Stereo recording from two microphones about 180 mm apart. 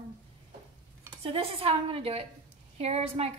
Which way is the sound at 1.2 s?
30° right (ahead or behind).